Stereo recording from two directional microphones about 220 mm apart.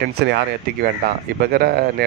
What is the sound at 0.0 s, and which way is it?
A man's voice, 50° right (ahead or behind).